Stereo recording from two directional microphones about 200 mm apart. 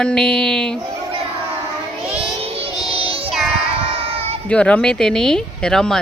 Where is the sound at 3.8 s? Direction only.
30° right (ahead or behind).